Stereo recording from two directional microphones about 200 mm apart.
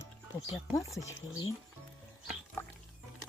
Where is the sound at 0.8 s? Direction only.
15° left (ahead or behind).